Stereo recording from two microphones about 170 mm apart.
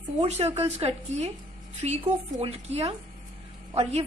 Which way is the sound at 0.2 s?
40° right (ahead or behind).